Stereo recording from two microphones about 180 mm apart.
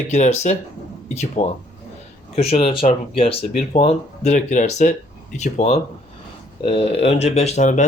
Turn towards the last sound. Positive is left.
turn(degrees=40)  # may be behind; listen again after turning